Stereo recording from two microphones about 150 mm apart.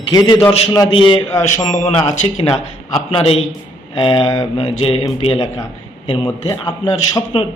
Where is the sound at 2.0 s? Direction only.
40° left (ahead or behind).